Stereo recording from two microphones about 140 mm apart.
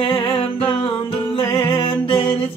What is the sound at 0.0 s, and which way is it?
Music, 40° left (ahead or behind).